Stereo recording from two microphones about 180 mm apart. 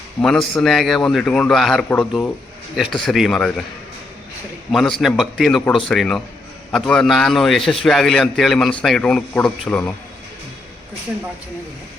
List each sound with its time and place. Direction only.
0.2 s a man's voice: 5° left (ahead or behind)
4.7 s a man's voice: centre (ahead or behind)